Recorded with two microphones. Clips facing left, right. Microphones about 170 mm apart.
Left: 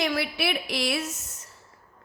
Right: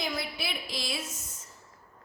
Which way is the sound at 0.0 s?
70° left (ahead or behind).